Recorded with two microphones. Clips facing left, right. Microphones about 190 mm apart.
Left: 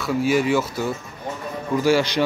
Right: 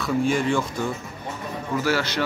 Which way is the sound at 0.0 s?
5° left (ahead or behind).